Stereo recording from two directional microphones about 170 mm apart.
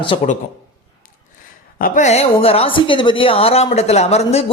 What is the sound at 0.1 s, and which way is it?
Speech, 35° left (ahead or behind).